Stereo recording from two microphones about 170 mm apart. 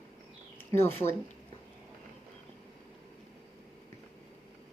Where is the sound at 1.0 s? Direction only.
15° left (ahead or behind).